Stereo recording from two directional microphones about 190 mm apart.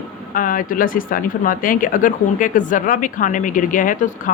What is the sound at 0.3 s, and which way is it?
Speech, 45° left (ahead or behind).